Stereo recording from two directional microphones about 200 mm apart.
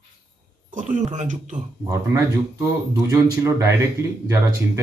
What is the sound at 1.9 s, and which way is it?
Speech, 15° right (ahead or behind).